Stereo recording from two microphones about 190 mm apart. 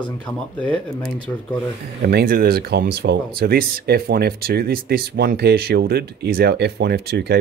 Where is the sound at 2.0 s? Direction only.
50° right (ahead or behind).